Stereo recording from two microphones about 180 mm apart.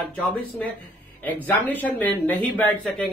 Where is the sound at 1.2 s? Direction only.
10° left (ahead or behind).